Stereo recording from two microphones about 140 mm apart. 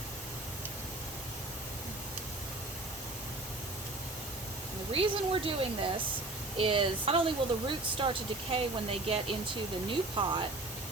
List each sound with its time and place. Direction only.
4.9 s speech: 40° right (ahead or behind)